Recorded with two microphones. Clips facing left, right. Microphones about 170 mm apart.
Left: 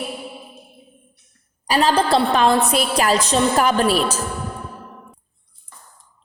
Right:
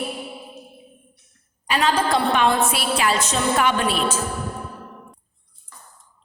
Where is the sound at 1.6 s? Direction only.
35° left (ahead or behind).